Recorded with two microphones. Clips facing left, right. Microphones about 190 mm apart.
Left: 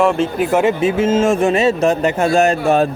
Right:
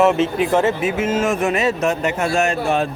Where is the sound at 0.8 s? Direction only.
30° left (ahead or behind).